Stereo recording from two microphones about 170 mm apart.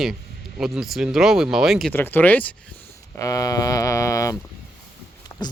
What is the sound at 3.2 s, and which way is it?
Speech, 20° left (ahead or behind).